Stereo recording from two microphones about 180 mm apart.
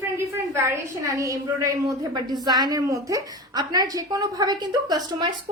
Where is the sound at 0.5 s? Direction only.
15° right (ahead or behind).